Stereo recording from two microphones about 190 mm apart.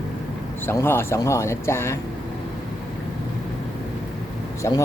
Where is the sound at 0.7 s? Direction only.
10° left (ahead or behind).